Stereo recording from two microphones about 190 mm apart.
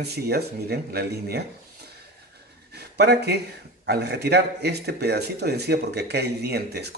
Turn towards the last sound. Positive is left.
turn(degrees=-60)  # may be behind; listen again after turning